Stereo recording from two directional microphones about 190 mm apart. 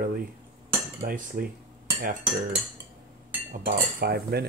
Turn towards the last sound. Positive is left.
turn(degrees=-55)  # may be behind; listen again after turning